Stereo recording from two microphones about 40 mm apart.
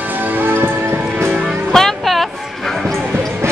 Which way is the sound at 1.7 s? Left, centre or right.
Centre.